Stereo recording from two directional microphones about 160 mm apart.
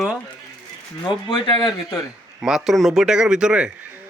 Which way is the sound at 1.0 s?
30° left (ahead or behind).